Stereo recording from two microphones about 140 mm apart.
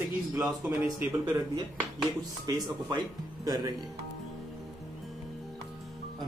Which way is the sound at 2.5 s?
30° right (ahead or behind).